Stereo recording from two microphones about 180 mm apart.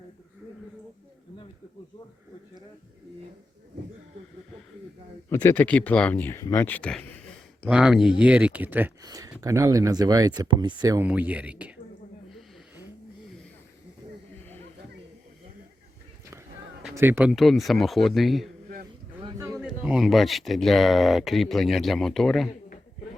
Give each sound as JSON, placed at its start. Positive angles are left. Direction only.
{"t": 5.3, "sound": "speech", "side_deg": 15}
{"t": 7.7, "sound": "speech", "side_deg": -5}
{"t": 11.1, "sound": "speech", "side_deg": -10}
{"t": 12.3, "sound": "snort", "side_deg": -10}
{"t": 16.9, "sound": "speech", "side_deg": -10}
{"t": 19.5, "sound": "speech", "side_deg": 0}